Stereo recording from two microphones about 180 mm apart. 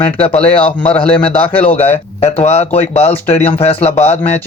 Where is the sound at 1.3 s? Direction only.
30° left (ahead or behind).